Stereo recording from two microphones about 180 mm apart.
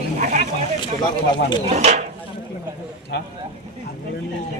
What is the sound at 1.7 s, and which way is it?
Speech, 40° right (ahead or behind).